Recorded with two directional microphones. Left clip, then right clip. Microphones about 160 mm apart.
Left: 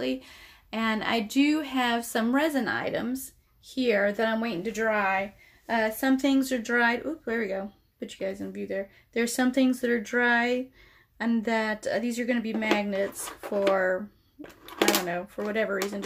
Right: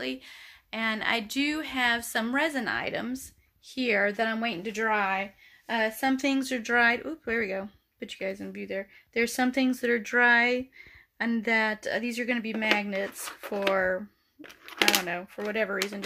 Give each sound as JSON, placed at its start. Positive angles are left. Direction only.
{"t": 0.0, "sound": "speech", "side_deg": 5}
{"t": 15.0, "sound": "speech", "side_deg": -25}